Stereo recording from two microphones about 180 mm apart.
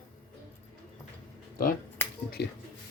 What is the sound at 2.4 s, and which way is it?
Speech, 65° left (ahead or behind).